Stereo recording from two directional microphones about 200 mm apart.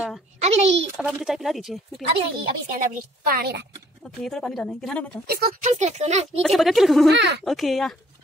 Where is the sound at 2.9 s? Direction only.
45° right (ahead or behind).